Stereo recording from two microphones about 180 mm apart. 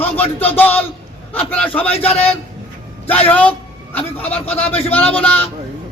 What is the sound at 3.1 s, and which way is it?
Speech, 10° left (ahead or behind).